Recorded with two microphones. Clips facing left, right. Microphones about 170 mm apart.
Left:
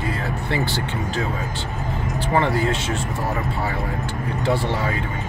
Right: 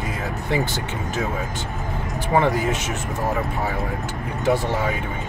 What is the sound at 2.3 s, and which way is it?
Speech, 15° right (ahead or behind).